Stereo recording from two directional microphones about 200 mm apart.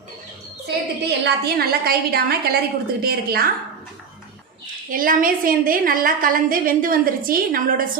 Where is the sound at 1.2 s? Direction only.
50° right (ahead or behind).